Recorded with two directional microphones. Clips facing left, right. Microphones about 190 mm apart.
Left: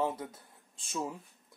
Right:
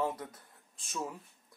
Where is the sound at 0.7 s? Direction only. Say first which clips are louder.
Left 3 dB; 30° left (ahead or behind).